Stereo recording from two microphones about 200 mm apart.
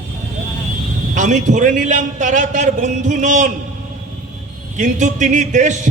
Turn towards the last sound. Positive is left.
turn(degrees=-40)  # may be behind; listen again after turning